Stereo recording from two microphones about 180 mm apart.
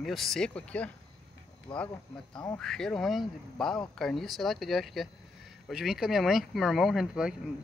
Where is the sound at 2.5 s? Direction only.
5° left (ahead or behind).